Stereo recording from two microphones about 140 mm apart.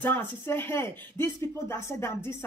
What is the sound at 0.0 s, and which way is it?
Speech, 15° left (ahead or behind).